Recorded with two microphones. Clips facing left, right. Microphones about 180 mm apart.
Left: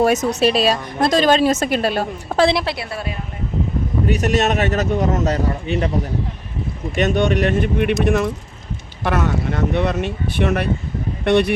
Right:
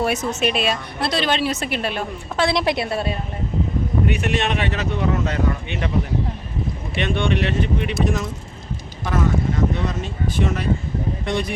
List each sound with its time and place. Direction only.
0.0 s a woman's voice: 40° left (ahead or behind)
2.6 s a woman's voice: 25° right (ahead or behind)
4.0 s a woman's voice: 40° left (ahead or behind)
6.9 s speech: 45° left (ahead or behind); by 11.5 s 65° left (ahead or behind)